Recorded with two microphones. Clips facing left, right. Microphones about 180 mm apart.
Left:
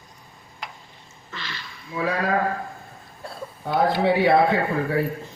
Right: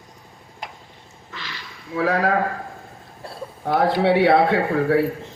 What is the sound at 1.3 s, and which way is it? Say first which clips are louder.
Duck: even; 10° right (ahead or behind).